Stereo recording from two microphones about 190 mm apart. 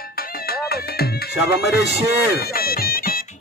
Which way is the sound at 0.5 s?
55° left (ahead or behind).